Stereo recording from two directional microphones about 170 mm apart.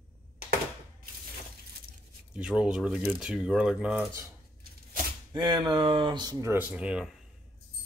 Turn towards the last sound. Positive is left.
turn(degrees=-5)  # may be behind; listen again after turning